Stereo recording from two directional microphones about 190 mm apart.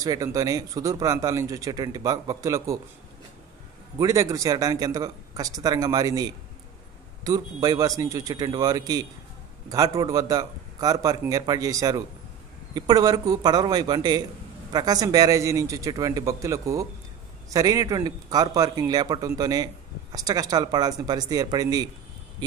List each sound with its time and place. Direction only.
0.0 s speech: 15° right (ahead or behind)
4.0 s a man's voice: 15° right (ahead or behind)